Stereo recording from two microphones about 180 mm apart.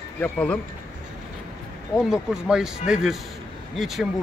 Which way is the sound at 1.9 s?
5° right (ahead or behind).